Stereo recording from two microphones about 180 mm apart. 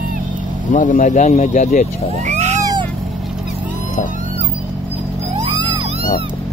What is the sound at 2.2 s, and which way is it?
Cat, 40° right (ahead or behind).